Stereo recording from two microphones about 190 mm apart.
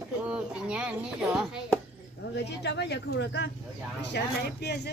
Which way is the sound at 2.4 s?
60° left (ahead or behind).